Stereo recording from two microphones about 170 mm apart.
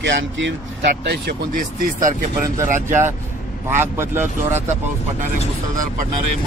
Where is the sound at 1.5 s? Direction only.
50° right (ahead or behind).